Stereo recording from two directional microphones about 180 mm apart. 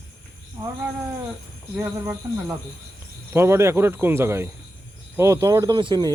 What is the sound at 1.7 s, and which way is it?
Speech, 15° right (ahead or behind).